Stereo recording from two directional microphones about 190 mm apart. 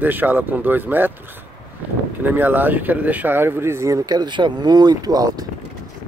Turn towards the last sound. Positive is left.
turn(degrees=-20)  # may be behind; listen again after turning